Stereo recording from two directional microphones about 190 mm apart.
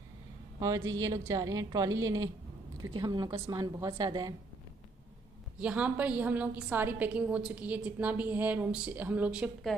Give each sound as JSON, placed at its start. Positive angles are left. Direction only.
{"t": 0.6, "sound": "a woman's voice", "side_deg": -20}
{"t": 5.6, "sound": "a woman's voice", "side_deg": -5}